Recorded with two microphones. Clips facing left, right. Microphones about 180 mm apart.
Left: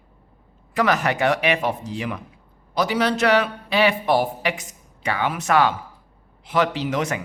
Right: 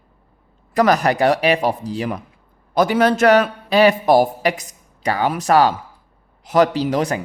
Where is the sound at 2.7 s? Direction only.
50° right (ahead or behind).